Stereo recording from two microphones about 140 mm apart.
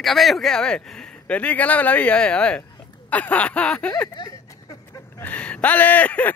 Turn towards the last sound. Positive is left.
turn(degrees=10)  # may be behind; listen again after turning